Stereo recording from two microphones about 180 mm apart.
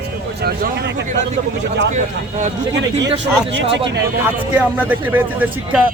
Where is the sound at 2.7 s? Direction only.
90° right.